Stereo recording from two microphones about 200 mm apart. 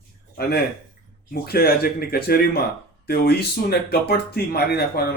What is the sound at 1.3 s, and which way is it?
Speech, 50° left (ahead or behind).